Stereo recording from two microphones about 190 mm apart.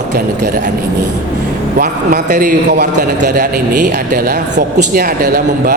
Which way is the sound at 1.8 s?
45° right (ahead or behind).